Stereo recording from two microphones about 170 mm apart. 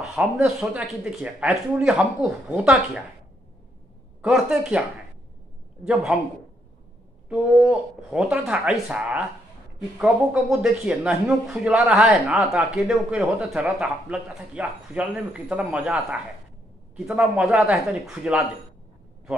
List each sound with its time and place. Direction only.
0.0 s speech: centre (ahead or behind)
4.2 s speech: centre (ahead or behind)
7.2 s speech: 5° right (ahead or behind)